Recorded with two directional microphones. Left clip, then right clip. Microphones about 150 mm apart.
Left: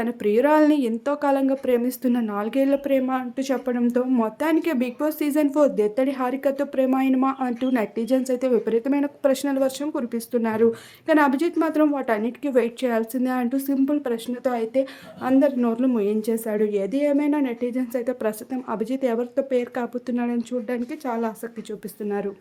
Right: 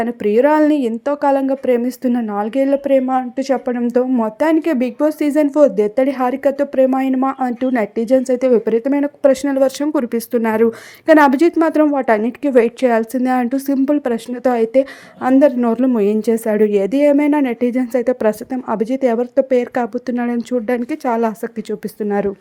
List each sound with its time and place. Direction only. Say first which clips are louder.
0.0 s a woman's voice: right 6 dB; 30° right (ahead or behind); by 22.3 s 45° right (ahead or behind)